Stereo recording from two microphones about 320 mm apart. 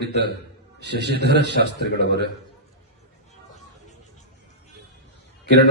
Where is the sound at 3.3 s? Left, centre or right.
Left.